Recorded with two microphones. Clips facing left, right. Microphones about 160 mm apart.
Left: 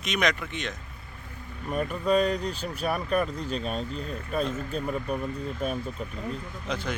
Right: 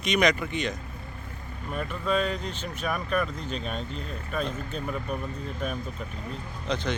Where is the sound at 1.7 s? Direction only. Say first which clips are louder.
Left 3 dB; 40° left (ahead or behind).